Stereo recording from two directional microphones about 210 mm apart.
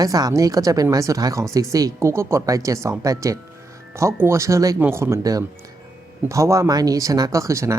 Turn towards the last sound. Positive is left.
turn(degrees=-15)  # may be behind; listen again after turning